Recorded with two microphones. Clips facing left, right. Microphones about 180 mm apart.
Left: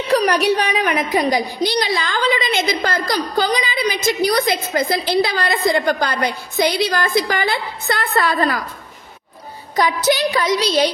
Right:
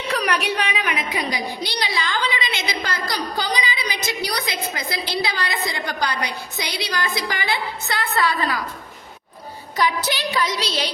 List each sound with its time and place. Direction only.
0.1 s a woman's voice: 35° left (ahead or behind)
9.8 s a woman's voice: 45° left (ahead or behind)